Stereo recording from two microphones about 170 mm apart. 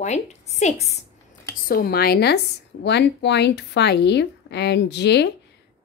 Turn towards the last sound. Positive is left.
turn(degrees=85)